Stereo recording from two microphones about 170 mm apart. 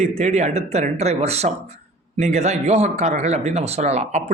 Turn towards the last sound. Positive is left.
turn(degrees=-40)  # may be behind; listen again after turning